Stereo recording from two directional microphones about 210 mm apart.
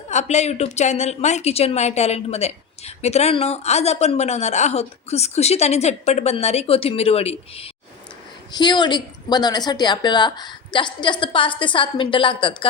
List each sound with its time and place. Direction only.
0.1 s a woman's voice: 35° left (ahead or behind)